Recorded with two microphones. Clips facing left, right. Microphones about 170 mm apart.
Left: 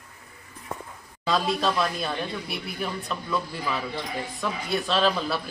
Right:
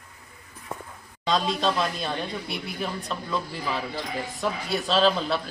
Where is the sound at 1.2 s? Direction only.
5° left (ahead or behind).